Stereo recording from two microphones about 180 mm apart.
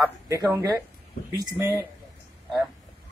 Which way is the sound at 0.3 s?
15° right (ahead or behind).